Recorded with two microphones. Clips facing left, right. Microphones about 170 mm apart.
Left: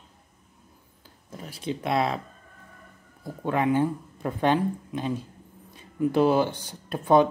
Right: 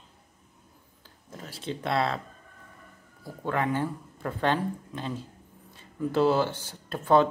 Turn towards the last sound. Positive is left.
turn(degrees=15)  # may be behind; listen again after turning